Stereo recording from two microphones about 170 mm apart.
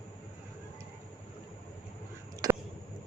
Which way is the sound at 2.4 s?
20° right (ahead or behind).